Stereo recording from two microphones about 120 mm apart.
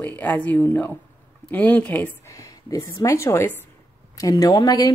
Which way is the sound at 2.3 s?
30° left (ahead or behind).